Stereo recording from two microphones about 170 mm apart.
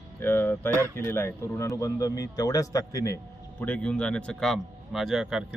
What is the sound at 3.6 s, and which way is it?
Speech, 5° left (ahead or behind).